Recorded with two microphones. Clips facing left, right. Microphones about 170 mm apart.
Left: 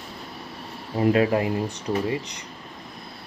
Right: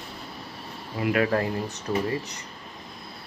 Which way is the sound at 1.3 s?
15° left (ahead or behind).